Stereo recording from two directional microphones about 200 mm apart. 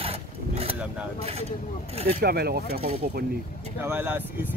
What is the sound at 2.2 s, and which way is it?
Speech, 50° right (ahead or behind).